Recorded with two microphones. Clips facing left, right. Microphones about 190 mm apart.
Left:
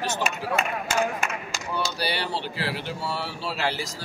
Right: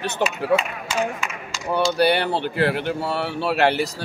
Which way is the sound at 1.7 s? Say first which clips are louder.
Right 11 dB; 55° right (ahead or behind).